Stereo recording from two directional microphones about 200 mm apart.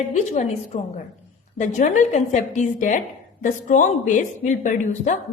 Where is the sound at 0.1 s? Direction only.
35° left (ahead or behind).